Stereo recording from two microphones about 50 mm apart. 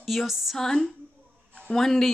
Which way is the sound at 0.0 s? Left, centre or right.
Centre.